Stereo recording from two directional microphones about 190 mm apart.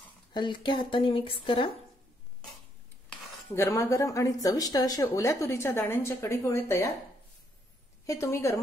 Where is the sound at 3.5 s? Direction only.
15° left (ahead or behind).